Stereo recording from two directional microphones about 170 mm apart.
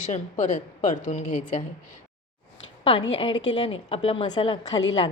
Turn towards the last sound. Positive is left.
turn(degrees=30)  # may be behind; listen again after turning